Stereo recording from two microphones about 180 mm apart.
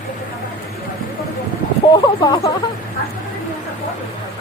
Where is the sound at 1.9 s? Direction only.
20° left (ahead or behind).